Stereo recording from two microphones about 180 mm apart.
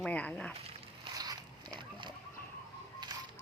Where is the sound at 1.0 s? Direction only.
20° right (ahead or behind).